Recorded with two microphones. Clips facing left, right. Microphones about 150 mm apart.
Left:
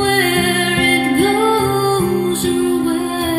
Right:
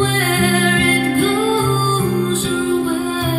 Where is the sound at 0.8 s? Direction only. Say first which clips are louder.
Left 2 dB; 60° left (ahead or behind).